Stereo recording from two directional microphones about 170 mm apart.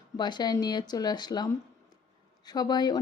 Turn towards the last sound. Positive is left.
turn(degrees=25)  # may be behind; listen again after turning